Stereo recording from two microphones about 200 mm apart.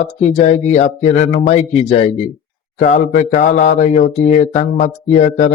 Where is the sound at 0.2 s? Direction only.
35° left (ahead or behind).